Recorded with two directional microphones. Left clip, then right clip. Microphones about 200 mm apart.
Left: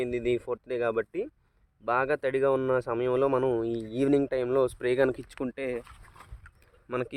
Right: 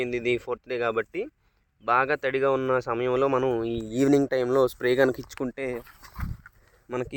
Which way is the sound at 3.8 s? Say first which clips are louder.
Right 6 dB; 40° right (ahead or behind).